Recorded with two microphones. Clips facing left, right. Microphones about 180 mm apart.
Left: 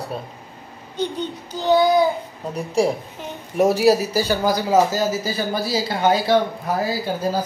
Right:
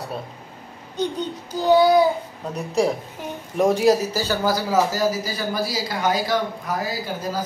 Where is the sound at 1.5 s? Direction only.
10° right (ahead or behind).